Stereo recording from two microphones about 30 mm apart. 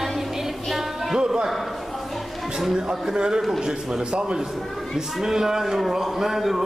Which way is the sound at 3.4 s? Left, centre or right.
Centre.